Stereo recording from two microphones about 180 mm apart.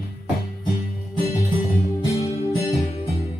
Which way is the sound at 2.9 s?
35° left (ahead or behind).